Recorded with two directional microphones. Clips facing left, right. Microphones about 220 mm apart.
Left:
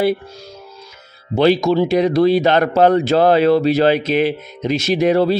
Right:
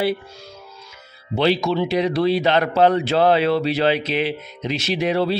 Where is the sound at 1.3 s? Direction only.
45° left (ahead or behind).